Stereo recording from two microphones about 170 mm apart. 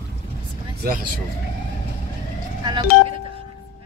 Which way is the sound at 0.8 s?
60° right (ahead or behind).